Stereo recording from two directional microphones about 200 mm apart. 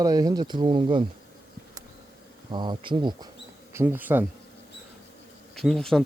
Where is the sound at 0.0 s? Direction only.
20° right (ahead or behind).